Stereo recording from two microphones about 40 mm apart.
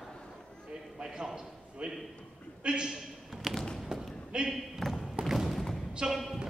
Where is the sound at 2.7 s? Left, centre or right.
Right.